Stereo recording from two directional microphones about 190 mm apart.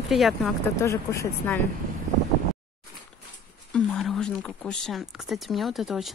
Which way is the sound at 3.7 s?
5° left (ahead or behind).